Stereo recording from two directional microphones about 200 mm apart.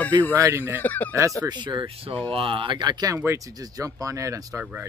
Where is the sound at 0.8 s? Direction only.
10° left (ahead or behind).